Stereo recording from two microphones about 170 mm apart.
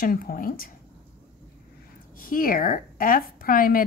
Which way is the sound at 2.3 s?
55° left (ahead or behind).